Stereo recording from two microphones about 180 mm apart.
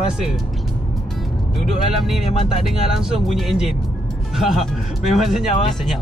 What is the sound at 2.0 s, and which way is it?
Speech, centre (ahead or behind).